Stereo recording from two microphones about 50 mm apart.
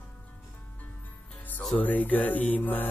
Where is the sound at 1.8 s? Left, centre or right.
Left.